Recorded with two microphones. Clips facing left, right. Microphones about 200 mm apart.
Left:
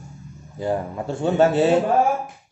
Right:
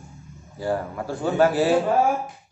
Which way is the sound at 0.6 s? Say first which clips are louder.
Left 2 dB; 20° left (ahead or behind).